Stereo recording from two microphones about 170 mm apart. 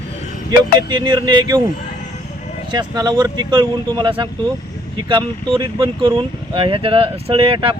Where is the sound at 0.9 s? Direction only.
25° right (ahead or behind).